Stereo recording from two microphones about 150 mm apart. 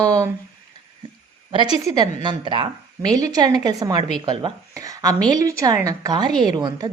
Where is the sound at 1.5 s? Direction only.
30° right (ahead or behind).